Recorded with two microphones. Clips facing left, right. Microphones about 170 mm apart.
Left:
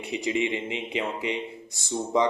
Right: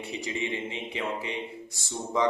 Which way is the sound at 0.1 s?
20° left (ahead or behind).